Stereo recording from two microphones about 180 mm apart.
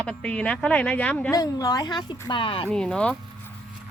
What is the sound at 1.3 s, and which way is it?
A woman's voice, 20° left (ahead or behind).